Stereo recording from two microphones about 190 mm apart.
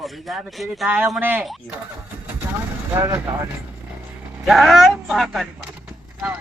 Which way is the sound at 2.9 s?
15° right (ahead or behind).